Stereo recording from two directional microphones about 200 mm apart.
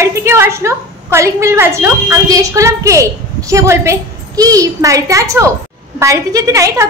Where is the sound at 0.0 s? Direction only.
15° right (ahead or behind).